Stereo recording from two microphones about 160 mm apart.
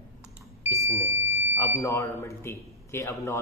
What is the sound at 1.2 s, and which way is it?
Smoke detector, 40° left (ahead or behind).